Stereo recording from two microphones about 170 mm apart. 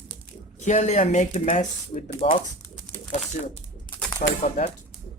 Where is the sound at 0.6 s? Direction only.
45° left (ahead or behind).